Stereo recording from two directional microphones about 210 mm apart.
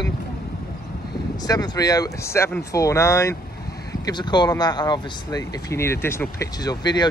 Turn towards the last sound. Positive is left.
turn(degrees=20)  # may be behind; listen again after turning